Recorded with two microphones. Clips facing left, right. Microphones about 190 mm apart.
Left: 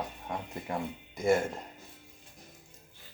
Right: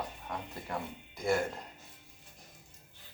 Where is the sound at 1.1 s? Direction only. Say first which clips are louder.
Left 5 dB; 20° left (ahead or behind).